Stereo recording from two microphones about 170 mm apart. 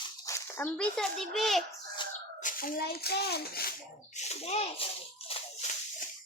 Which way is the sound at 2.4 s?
55° left (ahead or behind).